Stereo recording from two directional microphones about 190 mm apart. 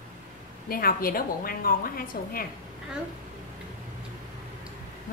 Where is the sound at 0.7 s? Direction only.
50° left (ahead or behind).